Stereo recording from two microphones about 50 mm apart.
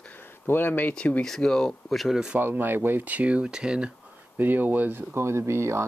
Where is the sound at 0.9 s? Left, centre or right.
Left.